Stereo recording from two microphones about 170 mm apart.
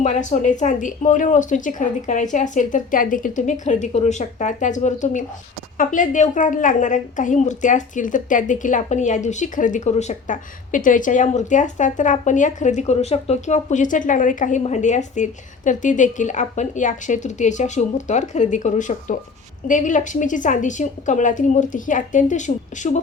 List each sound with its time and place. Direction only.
0.0 s a woman's voice: 45° left (ahead or behind)